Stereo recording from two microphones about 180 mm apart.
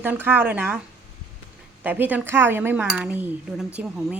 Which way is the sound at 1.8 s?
10° right (ahead or behind).